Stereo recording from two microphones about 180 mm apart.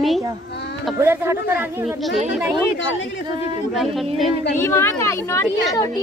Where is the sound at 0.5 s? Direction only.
70° left (ahead or behind).